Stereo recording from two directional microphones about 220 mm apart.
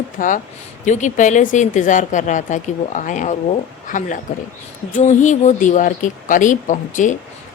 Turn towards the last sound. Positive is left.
turn(degrees=35)  # may be behind; listen again after turning